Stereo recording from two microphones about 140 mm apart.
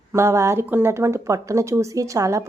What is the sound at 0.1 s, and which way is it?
Speech, 20° right (ahead or behind).